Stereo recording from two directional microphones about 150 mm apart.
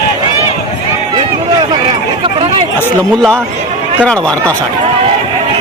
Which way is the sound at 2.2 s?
35° right (ahead or behind).